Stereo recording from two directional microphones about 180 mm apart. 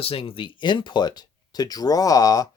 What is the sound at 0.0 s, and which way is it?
Speech, 30° left (ahead or behind).